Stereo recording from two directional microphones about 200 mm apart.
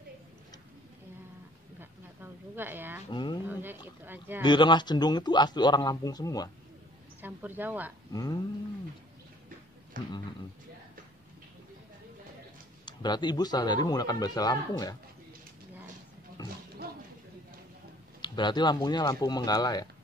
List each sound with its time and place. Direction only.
1.8 s a sound: 10° right (ahead or behind)
3.1 s speech: 20° left (ahead or behind)
3.4 s speech: 10° right (ahead or behind)
4.4 s speech: 25° left (ahead or behind)
7.2 s speech: 10° right (ahead or behind)
8.1 s speech: 20° left (ahead or behind)
9.9 s speech: 40° right (ahead or behind)
12.8 s speech: 20° left (ahead or behind)
18.2 s speech: 20° left (ahead or behind)